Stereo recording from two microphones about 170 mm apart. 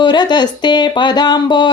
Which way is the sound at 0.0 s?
25° left (ahead or behind).